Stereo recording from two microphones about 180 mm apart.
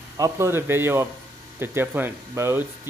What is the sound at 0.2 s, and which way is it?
Speech, 15° right (ahead or behind).